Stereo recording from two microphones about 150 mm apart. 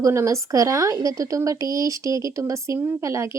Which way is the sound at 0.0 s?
20° right (ahead or behind).